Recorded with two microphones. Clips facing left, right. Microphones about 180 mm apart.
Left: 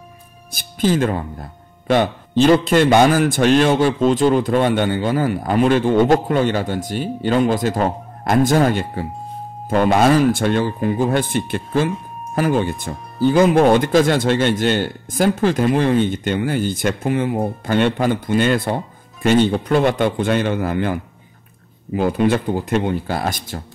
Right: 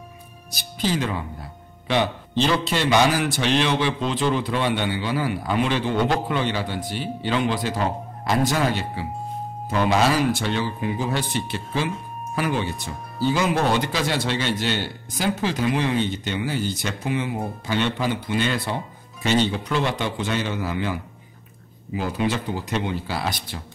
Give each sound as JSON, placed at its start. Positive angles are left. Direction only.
{"t": 0.5, "sound": "speech", "side_deg": 50}